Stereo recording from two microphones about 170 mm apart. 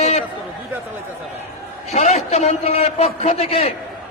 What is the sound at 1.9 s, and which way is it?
A man's voice, 40° left (ahead or behind).